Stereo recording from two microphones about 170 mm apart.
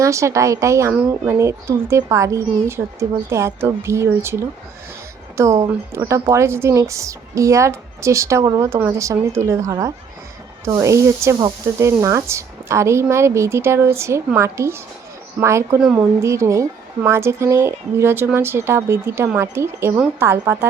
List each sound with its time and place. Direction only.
0.0 s speech: 15° right (ahead or behind)